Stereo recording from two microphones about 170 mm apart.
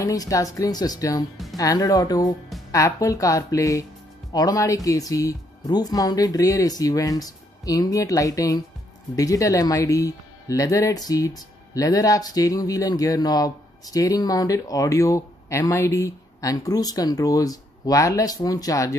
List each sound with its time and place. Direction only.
0.0 s speech: 20° left (ahead or behind)